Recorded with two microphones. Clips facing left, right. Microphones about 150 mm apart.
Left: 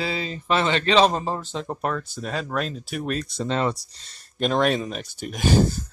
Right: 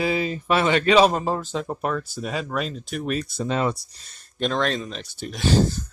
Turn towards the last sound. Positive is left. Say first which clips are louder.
# even
turn(degrees=10)  # may be behind; listen again after turning